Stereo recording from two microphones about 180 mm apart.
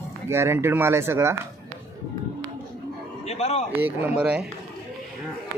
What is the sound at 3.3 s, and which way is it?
Speech, 35° left (ahead or behind).